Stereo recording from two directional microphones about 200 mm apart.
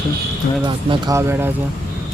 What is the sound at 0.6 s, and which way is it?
Speech, 20° right (ahead or behind).